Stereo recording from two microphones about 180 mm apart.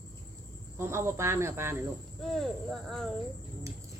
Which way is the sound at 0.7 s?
15° right (ahead or behind).